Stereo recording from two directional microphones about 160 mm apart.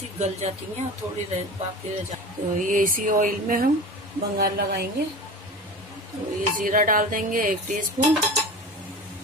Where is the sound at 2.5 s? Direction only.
55° right (ahead or behind).